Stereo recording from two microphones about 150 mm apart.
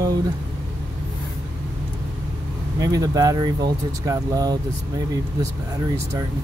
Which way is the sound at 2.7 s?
25° right (ahead or behind).